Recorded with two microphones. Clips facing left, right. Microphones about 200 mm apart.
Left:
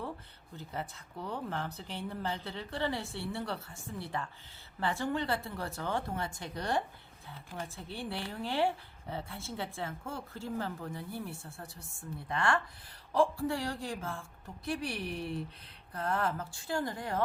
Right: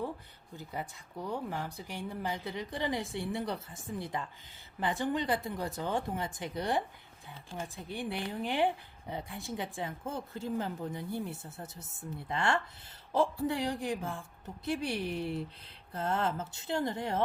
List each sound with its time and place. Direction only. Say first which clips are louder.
0.5 s a woman's voice: even; 15° right (ahead or behind)